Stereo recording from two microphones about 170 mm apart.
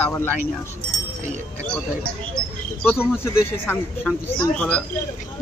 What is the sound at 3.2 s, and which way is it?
Speech, 10° left (ahead or behind).